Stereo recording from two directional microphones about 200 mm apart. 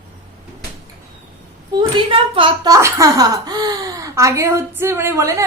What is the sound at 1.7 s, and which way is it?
Speech, 25° right (ahead or behind).